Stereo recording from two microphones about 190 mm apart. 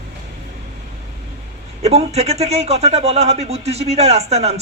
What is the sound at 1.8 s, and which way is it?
Speech, 35° right (ahead or behind).